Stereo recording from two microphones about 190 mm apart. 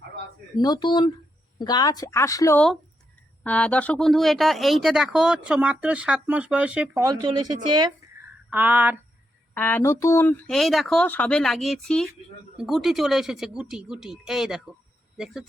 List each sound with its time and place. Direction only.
0.5 s a woman's voice: 20° left (ahead or behind); by 7.0 s 5° right (ahead or behind)
7.0 s a woman's voice: 20° right (ahead or behind)
8.4 s a sound: 10° right (ahead or behind)
9.6 s speech: 10° left (ahead or behind)